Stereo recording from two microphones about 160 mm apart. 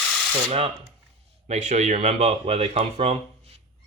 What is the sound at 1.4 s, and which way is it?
Speech, 45° right (ahead or behind).